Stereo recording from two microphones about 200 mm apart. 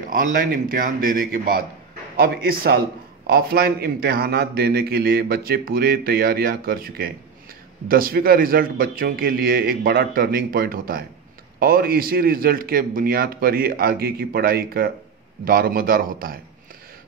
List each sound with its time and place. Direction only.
0.1 s a man's voice: 45° right (ahead or behind)